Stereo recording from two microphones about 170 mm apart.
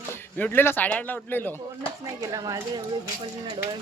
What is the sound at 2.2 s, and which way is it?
Speech, 20° right (ahead or behind).